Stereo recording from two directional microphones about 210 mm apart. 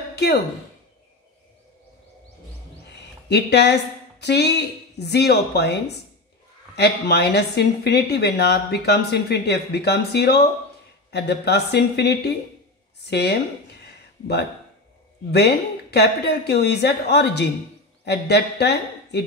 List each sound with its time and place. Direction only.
2.9 s a woman's voice: 55° left (ahead or behind)
15.3 s a woman's voice: 50° left (ahead or behind)